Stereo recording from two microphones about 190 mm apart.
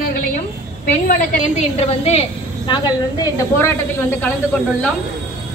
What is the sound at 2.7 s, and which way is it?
A woman's voice, 20° left (ahead or behind).